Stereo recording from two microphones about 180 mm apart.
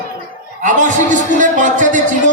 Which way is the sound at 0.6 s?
45° right (ahead or behind).